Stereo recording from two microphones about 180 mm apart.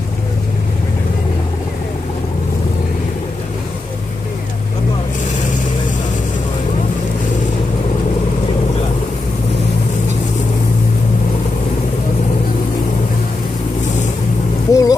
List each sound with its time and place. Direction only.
14.7 s vehicle: 20° left (ahead or behind)